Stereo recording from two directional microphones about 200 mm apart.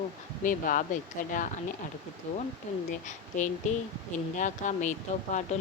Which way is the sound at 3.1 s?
40° left (ahead or behind).